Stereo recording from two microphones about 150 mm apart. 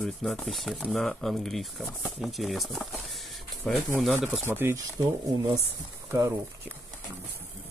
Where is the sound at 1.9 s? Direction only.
15° left (ahead or behind).